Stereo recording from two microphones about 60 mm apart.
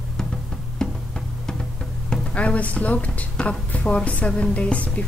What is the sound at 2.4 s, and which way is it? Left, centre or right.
A woman's voice, left.